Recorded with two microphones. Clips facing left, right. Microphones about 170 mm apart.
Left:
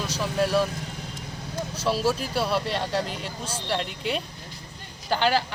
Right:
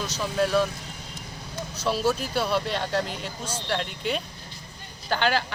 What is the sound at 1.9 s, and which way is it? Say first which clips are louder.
Speech: even; 5° left (ahead or behind).